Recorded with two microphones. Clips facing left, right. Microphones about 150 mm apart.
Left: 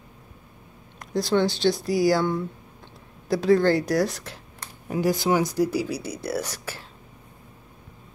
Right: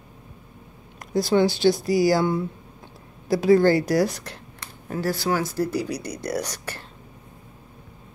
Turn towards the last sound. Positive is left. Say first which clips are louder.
# right 1 dB
turn(degrees=5)  # may be behind; listen again after turning